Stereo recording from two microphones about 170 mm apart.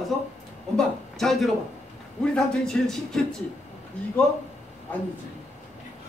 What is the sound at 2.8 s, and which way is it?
Speech, 5° left (ahead or behind).